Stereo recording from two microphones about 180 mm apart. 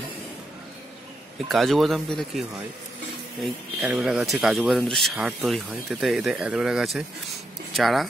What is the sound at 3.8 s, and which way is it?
Speech, 5° right (ahead or behind).